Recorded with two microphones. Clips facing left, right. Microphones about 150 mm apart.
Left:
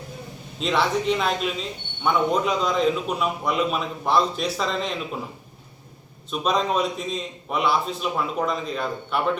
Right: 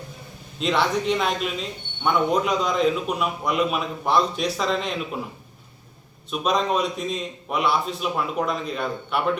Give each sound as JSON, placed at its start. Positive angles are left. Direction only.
{"t": 0.6, "sound": "a man's voice", "side_deg": 0}
{"t": 6.3, "sound": "a man's voice", "side_deg": 0}